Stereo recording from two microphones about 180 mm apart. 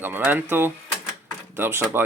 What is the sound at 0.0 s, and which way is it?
Speech, 10° right (ahead or behind).